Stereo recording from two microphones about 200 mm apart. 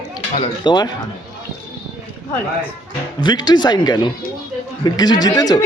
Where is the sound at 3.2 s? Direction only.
20° left (ahead or behind).